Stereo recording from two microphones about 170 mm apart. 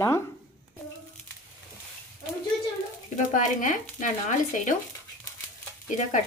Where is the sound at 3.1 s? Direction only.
50° left (ahead or behind).